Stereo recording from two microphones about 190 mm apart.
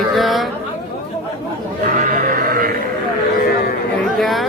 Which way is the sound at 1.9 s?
45° right (ahead or behind).